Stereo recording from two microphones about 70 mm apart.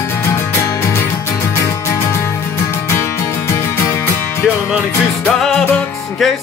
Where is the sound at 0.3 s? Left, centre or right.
Left.